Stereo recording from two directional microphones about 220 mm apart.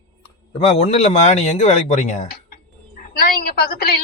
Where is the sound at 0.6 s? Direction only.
25° left (ahead or behind).